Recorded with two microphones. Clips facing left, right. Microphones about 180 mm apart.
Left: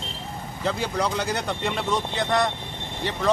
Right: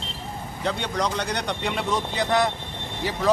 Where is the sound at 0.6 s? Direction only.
5° left (ahead or behind).